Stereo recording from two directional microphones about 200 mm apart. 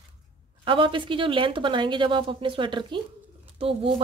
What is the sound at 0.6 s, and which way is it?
A woman's voice, 25° right (ahead or behind).